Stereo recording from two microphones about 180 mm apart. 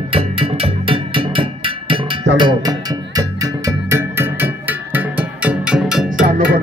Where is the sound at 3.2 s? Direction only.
15° right (ahead or behind).